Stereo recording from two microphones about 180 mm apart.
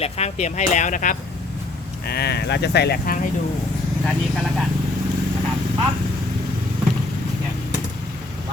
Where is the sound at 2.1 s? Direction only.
60° left (ahead or behind).